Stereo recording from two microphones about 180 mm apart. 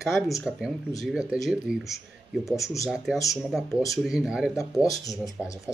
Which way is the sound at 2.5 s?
15° left (ahead or behind).